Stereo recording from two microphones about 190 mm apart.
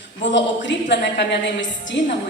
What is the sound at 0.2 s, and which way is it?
A woman's voice, 70° left (ahead or behind).